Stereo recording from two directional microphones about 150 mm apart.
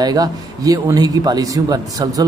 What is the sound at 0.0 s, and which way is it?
Speech, 25° right (ahead or behind).